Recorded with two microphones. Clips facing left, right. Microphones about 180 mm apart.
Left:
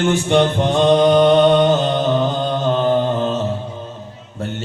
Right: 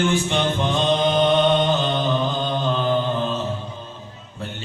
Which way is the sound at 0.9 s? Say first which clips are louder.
Left 7 dB; 45° left (ahead or behind).